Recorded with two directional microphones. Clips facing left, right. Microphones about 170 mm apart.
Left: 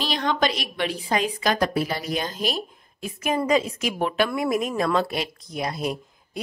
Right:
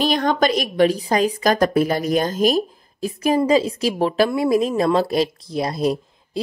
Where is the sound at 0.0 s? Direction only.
50° right (ahead or behind).